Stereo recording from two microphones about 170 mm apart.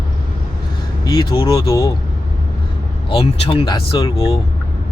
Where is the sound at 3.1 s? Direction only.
35° left (ahead or behind).